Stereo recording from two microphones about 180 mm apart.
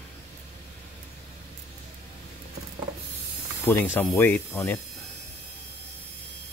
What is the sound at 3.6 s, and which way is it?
Speech, 15° left (ahead or behind).